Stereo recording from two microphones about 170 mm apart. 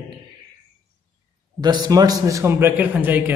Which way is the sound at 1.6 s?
25° right (ahead or behind).